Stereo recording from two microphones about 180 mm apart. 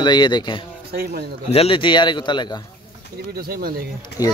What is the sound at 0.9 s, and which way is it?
Speech, 60° right (ahead or behind).